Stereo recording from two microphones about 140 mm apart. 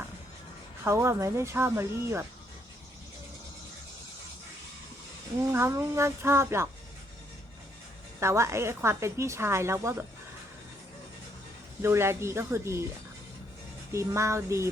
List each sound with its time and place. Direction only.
0.9 s a woman's voice: 20° right (ahead or behind)
5.4 s a woman's voice: 20° right (ahead or behind)
8.2 s a woman's voice: 20° right (ahead or behind)
11.8 s a woman's voice: 15° right (ahead or behind)
13.9 s a woman's voice: 20° right (ahead or behind)